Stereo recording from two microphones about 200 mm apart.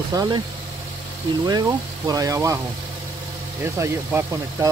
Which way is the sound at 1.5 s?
20° right (ahead or behind).